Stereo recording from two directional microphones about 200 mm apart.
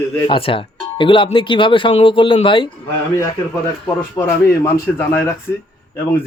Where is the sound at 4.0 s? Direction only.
10° left (ahead or behind).